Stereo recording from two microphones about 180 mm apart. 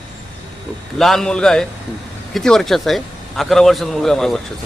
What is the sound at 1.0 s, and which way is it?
A man's voice, centre (ahead or behind).